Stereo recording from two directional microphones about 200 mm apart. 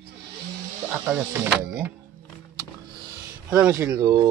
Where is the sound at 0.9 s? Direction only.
5° right (ahead or behind).